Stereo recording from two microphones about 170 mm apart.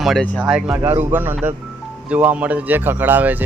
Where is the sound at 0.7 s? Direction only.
15° right (ahead or behind).